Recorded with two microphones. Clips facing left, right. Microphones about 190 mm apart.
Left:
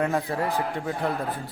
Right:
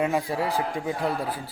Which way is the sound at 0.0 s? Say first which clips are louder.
Even; 10° right (ahead or behind).